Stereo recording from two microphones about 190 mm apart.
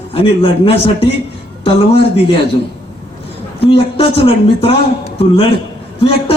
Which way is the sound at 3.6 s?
30° left (ahead or behind).